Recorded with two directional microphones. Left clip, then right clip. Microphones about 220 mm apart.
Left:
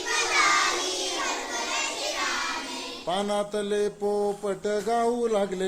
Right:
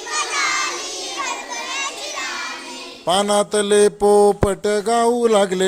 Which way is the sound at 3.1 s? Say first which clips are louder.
Right 11 dB; 40° right (ahead or behind).